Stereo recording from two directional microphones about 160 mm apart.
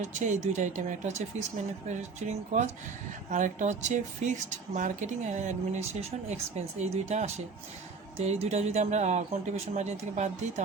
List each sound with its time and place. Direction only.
0.0 s speech: 50° right (ahead or behind)
3.2 s speech: 50° right (ahead or behind)